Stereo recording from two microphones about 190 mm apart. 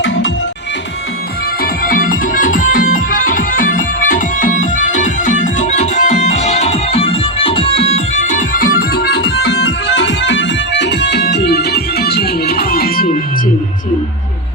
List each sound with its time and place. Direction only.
1.6 s music: 50° left (ahead or behind)